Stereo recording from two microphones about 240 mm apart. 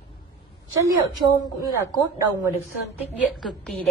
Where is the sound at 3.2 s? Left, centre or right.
Centre.